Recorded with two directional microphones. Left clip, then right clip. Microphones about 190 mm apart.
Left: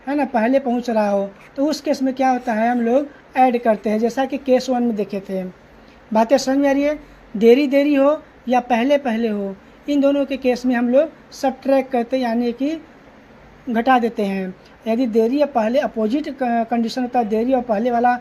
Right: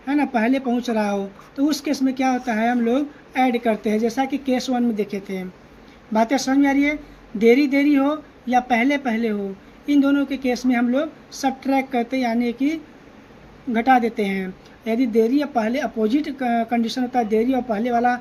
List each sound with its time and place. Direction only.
0.0 s speech: 20° left (ahead or behind)
13.8 s speech: 25° left (ahead or behind)